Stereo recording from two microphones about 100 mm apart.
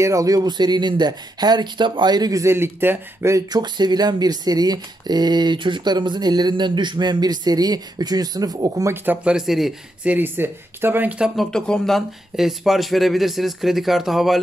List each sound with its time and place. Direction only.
0.0 s speech: 35° right (ahead or behind)
2.4 s speech: 25° right (ahead or behind)
3.6 s speech: 45° right (ahead or behind)
8.9 s speech: 20° right (ahead or behind)
10.0 s speech: 20° right (ahead or behind)
11.3 s speech: 5° left (ahead or behind)